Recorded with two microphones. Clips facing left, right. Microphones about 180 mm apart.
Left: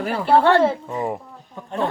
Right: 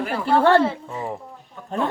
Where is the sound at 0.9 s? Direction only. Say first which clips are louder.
Left 4 dB; 15° left (ahead or behind).